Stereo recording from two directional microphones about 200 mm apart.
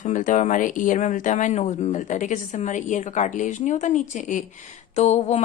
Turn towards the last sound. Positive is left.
turn(degrees=35)  # may be behind; listen again after turning